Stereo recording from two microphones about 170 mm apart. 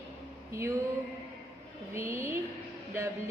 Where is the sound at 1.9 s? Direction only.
15° right (ahead or behind).